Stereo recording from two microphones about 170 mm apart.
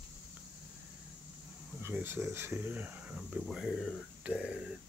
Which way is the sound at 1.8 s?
15° right (ahead or behind).